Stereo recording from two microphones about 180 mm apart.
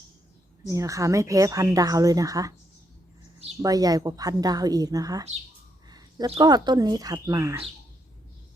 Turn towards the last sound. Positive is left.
turn(degrees=-15)  # may be behind; listen again after turning